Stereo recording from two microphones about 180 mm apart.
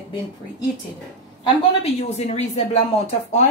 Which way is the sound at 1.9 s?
35° left (ahead or behind).